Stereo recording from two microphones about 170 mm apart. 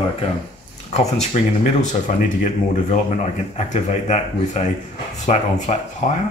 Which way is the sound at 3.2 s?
45° left (ahead or behind).